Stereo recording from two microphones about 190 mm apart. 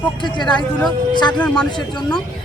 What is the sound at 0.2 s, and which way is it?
Speech, 25° left (ahead or behind).